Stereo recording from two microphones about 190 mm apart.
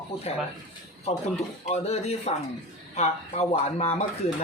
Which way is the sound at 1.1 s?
35° left (ahead or behind).